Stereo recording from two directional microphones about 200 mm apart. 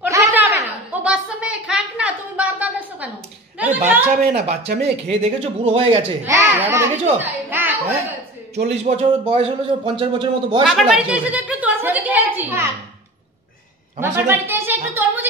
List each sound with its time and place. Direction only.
0.0 s a sound: 15° right (ahead or behind)
4.3 s speech: 30° right (ahead or behind)
6.2 s speech: 15° right (ahead or behind)
8.8 s a man's voice: 30° right (ahead or behind)
10.6 s a woman's voice: 5° right (ahead or behind)
14.1 s a woman's voice: 10° right (ahead or behind)